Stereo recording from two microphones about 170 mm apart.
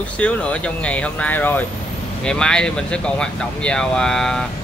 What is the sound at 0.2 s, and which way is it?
Speech, 5° left (ahead or behind).